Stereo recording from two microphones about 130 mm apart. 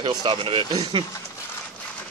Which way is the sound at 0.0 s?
35° right (ahead or behind).